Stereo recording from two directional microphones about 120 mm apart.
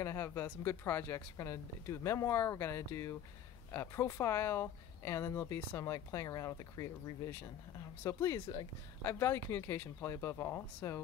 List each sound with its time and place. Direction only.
0.0 s speech: 20° left (ahead or behind)